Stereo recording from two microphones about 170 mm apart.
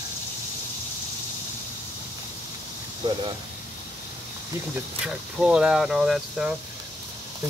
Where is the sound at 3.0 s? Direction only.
25° right (ahead or behind).